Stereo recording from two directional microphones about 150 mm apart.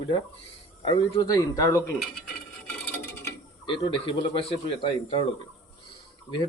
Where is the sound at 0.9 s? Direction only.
30° left (ahead or behind).